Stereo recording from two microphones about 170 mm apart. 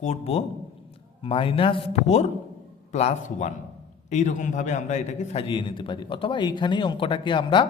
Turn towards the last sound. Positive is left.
turn(degrees=30)  # may be behind; listen again after turning